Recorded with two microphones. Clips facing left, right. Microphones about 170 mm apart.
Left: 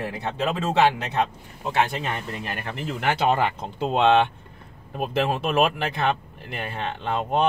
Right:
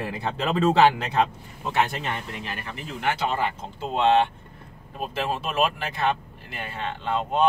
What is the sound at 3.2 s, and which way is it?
Speech, 65° left (ahead or behind).